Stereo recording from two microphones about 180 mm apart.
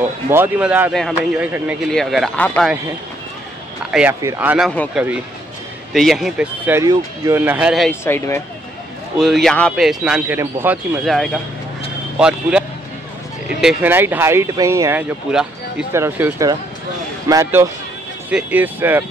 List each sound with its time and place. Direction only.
0.3 s speech: 10° right (ahead or behind); by 2.7 s 5° left (ahead or behind)
4.1 s speech: 15° right (ahead or behind)
4.6 s speech: centre (ahead or behind)
7.9 s speech: 15° left (ahead or behind)
9.2 s speech: centre (ahead or behind)
11.1 s speech: centre (ahead or behind)